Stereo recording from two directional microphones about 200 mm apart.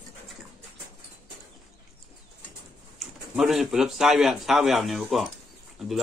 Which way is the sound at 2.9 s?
Centre (ahead or behind).